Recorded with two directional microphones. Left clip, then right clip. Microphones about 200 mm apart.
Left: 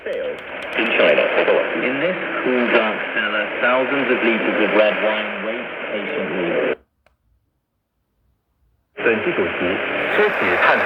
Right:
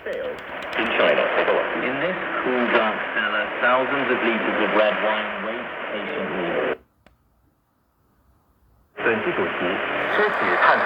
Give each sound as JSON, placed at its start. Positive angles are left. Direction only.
{"t": 0.0, "sound": "radio", "side_deg": 45}
{"t": 8.9, "sound": "radio", "side_deg": 45}